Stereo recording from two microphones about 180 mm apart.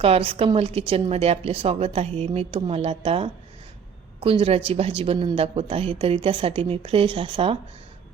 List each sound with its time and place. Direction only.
0.0 s a woman's voice: 30° right (ahead or behind)